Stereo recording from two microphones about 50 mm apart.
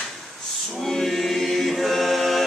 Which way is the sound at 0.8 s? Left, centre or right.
Centre.